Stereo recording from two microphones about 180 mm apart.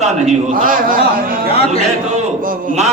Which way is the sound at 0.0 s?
45° right (ahead or behind).